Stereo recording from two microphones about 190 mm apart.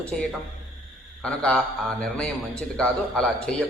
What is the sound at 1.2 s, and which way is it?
A man's voice, 5° left (ahead or behind).